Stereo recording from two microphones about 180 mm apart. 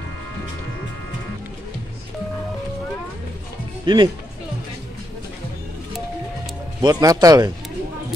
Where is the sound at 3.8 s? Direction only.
25° right (ahead or behind).